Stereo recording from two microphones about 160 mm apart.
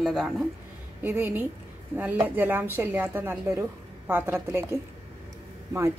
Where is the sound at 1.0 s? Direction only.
10° right (ahead or behind).